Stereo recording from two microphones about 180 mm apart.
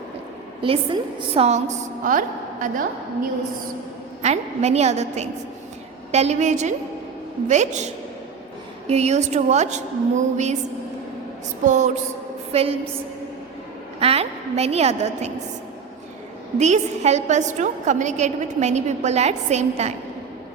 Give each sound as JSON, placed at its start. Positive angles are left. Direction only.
{"t": 0.6, "sound": "a woman's voice", "side_deg": -30}
{"t": 4.2, "sound": "a woman's voice", "side_deg": -40}
{"t": 8.9, "sound": "a woman's voice", "side_deg": -35}
{"t": 11.6, "sound": "music", "side_deg": -45}
{"t": 12.5, "sound": "a woman's voice", "side_deg": -35}
{"t": 14.0, "sound": "a woman's voice", "side_deg": -35}
{"t": 16.6, "sound": "a woman's voice", "side_deg": -40}